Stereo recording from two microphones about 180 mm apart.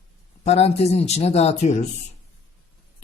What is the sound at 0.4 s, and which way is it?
Speech, 35° left (ahead or behind).